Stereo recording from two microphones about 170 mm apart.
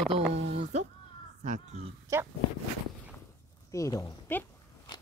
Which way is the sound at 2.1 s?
20° right (ahead or behind).